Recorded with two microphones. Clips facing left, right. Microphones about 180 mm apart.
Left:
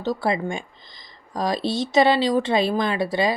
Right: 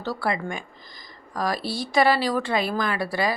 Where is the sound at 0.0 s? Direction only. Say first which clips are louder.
Left 4 dB; 20° left (ahead or behind).